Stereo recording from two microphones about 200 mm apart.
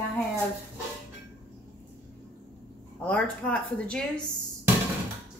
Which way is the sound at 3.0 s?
5° left (ahead or behind).